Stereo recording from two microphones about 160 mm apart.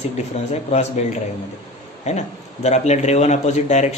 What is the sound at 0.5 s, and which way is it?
A man's voice, 45° left (ahead or behind).